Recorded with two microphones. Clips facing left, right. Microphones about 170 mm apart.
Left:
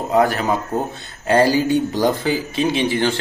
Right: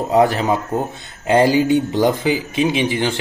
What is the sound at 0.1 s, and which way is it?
Speech, 20° right (ahead or behind).